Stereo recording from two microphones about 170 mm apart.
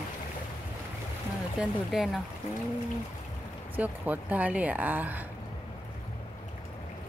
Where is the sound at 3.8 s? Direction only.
10° right (ahead or behind).